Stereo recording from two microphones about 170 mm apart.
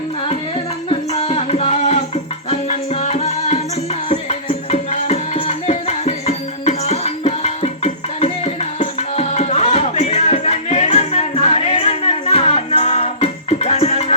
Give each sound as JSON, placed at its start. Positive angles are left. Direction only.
{"t": 0.9, "sound": "music", "side_deg": 35}